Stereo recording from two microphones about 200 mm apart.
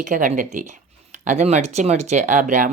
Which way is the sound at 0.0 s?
40° right (ahead or behind).